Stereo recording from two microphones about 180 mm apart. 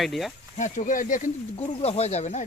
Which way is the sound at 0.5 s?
45° left (ahead or behind).